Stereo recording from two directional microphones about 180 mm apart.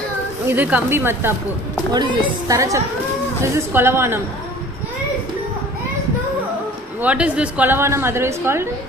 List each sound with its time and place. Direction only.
0.5 s a woman's voice: 10° right (ahead or behind)
7.0 s a woman's voice: 5° right (ahead or behind)